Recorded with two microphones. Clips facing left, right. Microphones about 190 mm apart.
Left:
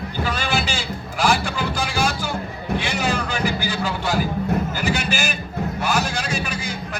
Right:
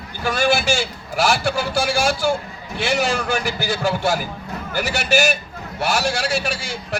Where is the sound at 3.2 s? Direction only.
45° right (ahead or behind).